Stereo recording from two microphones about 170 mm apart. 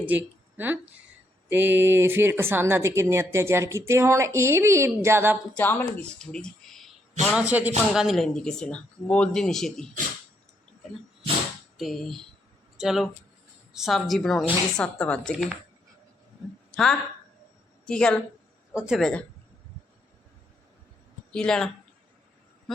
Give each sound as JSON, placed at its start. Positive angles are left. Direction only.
{"t": 0.0, "sound": "speech", "side_deg": -10}
{"t": 5.5, "sound": "speech", "side_deg": 10}
{"t": 11.8, "sound": "speech", "side_deg": 0}
{"t": 16.7, "sound": "speech", "side_deg": 5}
{"t": 21.3, "sound": "speech", "side_deg": 5}